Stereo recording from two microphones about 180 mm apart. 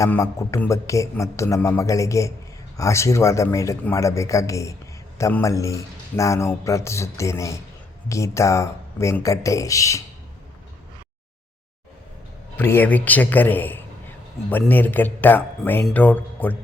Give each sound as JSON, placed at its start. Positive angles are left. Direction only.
{"t": 0.0, "sound": "speech", "side_deg": 15}
{"t": 12.5, "sound": "speech", "side_deg": 10}